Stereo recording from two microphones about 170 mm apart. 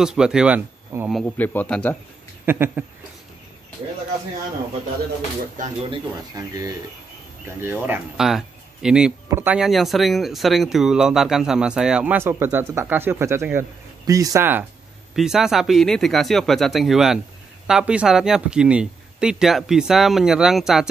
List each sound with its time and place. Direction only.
0.0 s speech: 5° right (ahead or behind)
1.2 s a man's voice: 10° left (ahead or behind)
2.4 s speech: 10° right (ahead or behind)
5.6 s speech: 35° right (ahead or behind)
6.3 s speech: 20° right (ahead or behind); by 20.9 s centre (ahead or behind)